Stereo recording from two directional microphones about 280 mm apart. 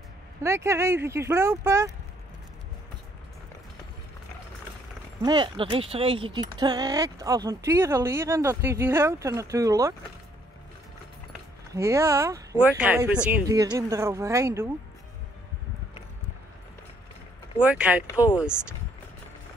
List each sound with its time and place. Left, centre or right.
0.4 s speech: centre
5.2 s speech: centre
11.7 s speech: centre
17.6 s speech: centre
18.0 s speech: centre